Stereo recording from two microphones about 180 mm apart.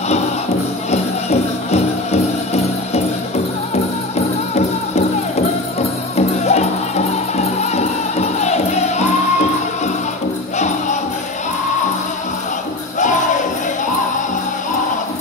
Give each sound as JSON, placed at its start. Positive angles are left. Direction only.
{"t": 0.9, "sound": "music", "side_deg": 35}
{"t": 4.6, "sound": "music", "side_deg": 35}
{"t": 13.0, "sound": "music", "side_deg": 45}